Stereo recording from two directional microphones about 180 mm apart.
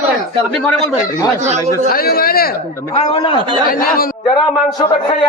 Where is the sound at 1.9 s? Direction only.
55° left (ahead or behind).